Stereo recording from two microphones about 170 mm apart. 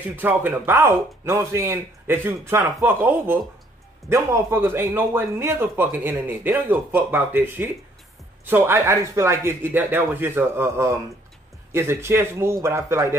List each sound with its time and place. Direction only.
0.1 s speech: 10° right (ahead or behind)